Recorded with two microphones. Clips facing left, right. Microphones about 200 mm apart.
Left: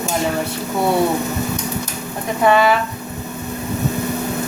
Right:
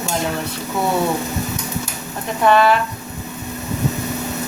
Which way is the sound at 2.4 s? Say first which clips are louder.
Even; 5° left (ahead or behind).